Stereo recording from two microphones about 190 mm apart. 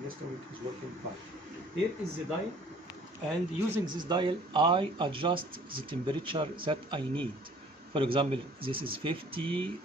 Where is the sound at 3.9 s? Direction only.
25° right (ahead or behind).